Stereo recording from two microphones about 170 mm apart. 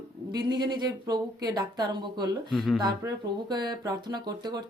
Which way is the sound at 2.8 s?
25° right (ahead or behind).